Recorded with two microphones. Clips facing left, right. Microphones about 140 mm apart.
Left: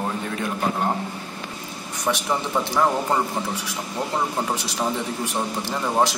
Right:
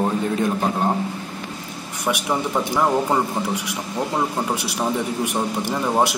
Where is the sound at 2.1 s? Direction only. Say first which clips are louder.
Right 2 dB; 10° right (ahead or behind).